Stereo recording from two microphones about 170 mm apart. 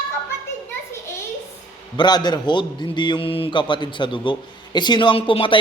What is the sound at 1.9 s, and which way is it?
A man's voice, 25° left (ahead or behind).